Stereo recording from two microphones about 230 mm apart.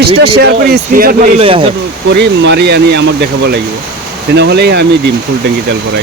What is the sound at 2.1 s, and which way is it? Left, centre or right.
A man's voice, right.